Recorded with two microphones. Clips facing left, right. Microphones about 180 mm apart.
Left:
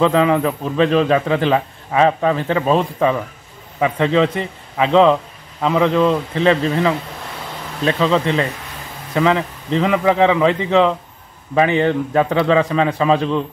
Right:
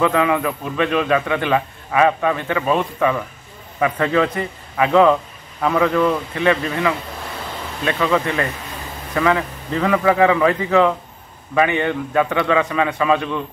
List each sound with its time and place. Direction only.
0.0 s a man's voice: 30° left (ahead or behind)